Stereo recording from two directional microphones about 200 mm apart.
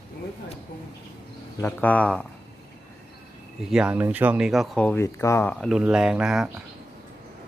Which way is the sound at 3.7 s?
5° right (ahead or behind).